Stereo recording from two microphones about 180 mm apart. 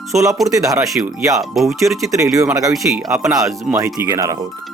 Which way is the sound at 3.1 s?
15° right (ahead or behind).